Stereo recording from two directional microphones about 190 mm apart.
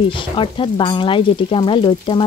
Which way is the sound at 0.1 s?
25° left (ahead or behind).